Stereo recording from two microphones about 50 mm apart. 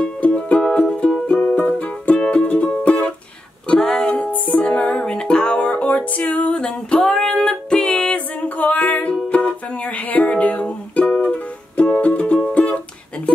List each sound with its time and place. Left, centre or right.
0.0 s music: left
3.6 s music: centre
4.2 s music: left
4.9 s music: centre